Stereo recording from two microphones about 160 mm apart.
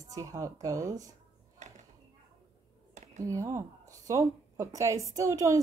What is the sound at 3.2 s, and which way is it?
A woman's voice, 20° right (ahead or behind).